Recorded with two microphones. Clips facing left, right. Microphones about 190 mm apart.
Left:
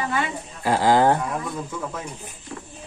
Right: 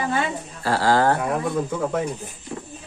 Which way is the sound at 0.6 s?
15° left (ahead or behind).